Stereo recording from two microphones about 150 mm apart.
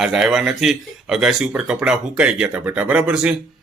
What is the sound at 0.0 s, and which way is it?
A man's voice, 5° right (ahead or behind).